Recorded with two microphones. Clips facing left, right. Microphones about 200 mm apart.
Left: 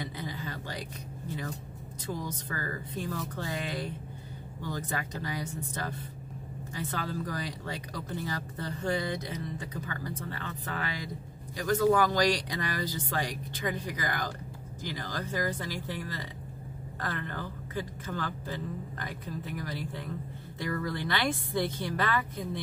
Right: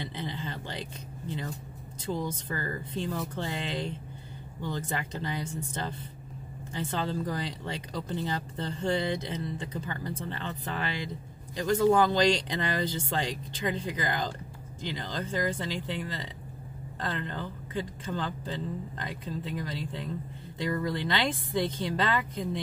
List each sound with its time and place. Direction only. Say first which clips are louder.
0.0 s speech: right 1 dB; 25° right (ahead or behind)
2.1 s speech: right 4 dB; 25° right (ahead or behind)